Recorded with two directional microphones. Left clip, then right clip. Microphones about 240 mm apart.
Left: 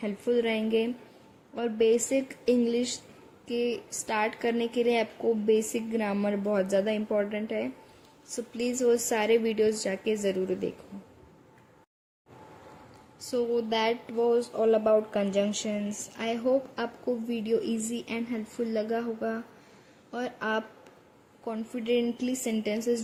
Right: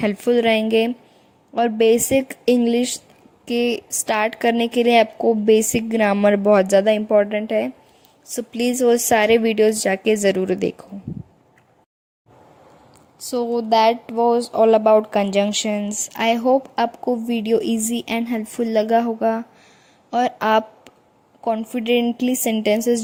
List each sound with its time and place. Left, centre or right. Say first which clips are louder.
0.0 s speech: right 10 dB; right
13.1 s speech: right 6 dB; right